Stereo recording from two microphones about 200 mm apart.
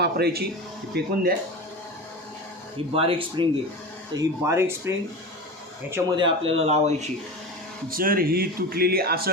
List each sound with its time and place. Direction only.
0.0 s speech: 55° right (ahead or behind)
2.7 s speech: 30° right (ahead or behind)
4.1 s speech: 15° right (ahead or behind)
6.1 s speech: 25° right (ahead or behind)
7.9 s speech: 45° right (ahead or behind)